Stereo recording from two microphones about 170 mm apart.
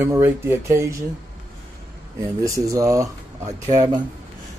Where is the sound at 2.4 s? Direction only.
20° right (ahead or behind).